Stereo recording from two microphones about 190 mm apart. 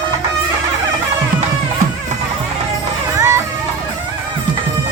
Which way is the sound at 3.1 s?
15° right (ahead or behind).